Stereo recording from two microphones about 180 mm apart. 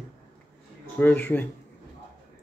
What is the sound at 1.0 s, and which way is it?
Speech, 10° left (ahead or behind).